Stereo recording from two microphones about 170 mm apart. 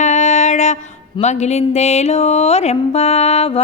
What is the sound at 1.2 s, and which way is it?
Mantra, 40° left (ahead or behind).